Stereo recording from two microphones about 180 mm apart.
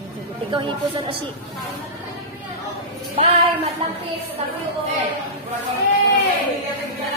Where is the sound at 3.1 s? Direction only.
35° right (ahead or behind).